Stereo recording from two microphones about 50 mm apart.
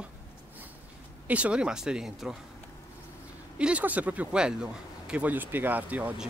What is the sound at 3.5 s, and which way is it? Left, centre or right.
Speech, right.